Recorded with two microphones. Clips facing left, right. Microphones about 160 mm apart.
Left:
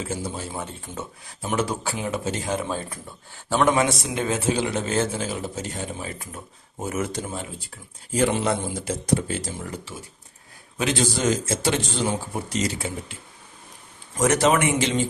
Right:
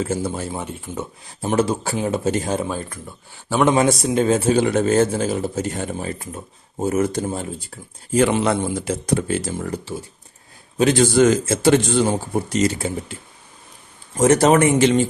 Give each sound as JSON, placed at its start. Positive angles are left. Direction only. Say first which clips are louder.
{"t": 0.0, "sound": "speech", "louder": "right 7 dB", "side_deg": -50}
{"t": 0.5, "sound": "speech", "louder": "right 5 dB", "side_deg": -15}
{"t": 1.4, "sound": "speech", "louder": "right 6 dB", "side_deg": -35}
{"t": 3.8, "sound": "speech", "louder": "right 6 dB", "side_deg": -35}
{"t": 4.5, "sound": "speech", "louder": "right 8 dB", "side_deg": -50}
{"t": 6.1, "sound": "speech", "louder": "right 5 dB", "side_deg": -30}
{"t": 8.1, "sound": "speech", "louder": "right 5 dB", "side_deg": -65}
{"t": 10.8, "sound": "a man's voice", "louder": "right 8 dB", "side_deg": -40}
{"t": 11.2, "sound": "speech", "louder": "right 8 dB", "side_deg": -60}
{"t": 14.2, "sound": "speech", "louder": "right 6 dB", "side_deg": -35}